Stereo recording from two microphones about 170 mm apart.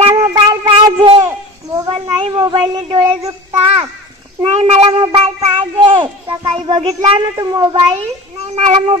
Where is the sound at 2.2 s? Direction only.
30° right (ahead or behind).